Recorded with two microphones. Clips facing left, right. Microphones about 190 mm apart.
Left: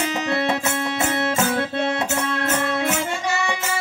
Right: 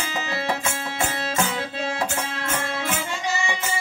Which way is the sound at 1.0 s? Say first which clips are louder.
Left 4 dB; 60° left (ahead or behind).